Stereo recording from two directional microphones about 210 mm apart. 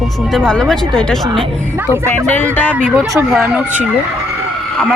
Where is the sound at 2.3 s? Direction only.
10° left (ahead or behind).